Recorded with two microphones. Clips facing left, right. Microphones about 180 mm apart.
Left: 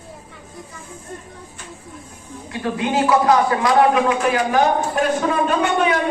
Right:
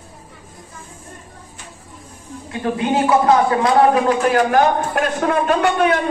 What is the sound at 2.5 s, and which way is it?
A man's voice, 25° right (ahead or behind).